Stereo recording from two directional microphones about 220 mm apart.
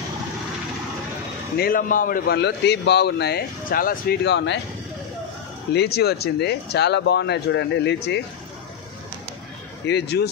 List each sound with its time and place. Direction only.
1.6 s a man's voice: 40° left (ahead or behind)
5.7 s a man's voice: 45° left (ahead or behind)
9.8 s a man's voice: 50° left (ahead or behind)